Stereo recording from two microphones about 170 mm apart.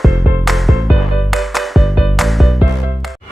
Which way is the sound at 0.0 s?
Centre (ahead or behind).